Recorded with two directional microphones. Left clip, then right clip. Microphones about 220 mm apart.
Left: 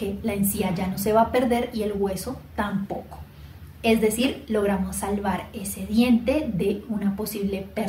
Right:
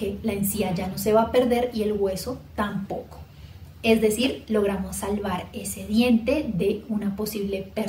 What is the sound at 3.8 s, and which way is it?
A woman's voice, 25° right (ahead or behind).